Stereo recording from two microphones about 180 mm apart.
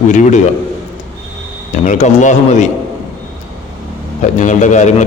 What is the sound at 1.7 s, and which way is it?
Speech, 45° left (ahead or behind).